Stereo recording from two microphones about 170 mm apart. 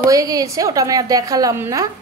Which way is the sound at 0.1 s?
20° right (ahead or behind).